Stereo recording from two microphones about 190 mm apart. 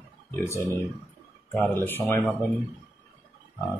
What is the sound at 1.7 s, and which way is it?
Speech, 10° left (ahead or behind).